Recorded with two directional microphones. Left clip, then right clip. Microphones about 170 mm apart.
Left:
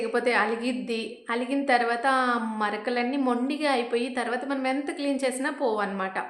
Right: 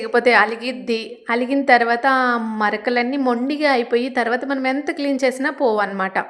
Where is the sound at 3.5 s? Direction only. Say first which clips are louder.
Right 8 dB; 40° right (ahead or behind).